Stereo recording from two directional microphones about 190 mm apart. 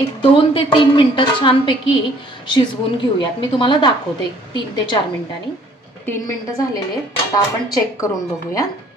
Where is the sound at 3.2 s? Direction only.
25° left (ahead or behind).